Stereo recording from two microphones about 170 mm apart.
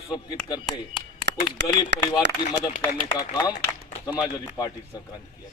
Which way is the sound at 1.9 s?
90° right.